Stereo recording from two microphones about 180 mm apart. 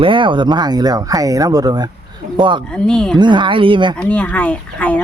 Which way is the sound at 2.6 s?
5° left (ahead or behind).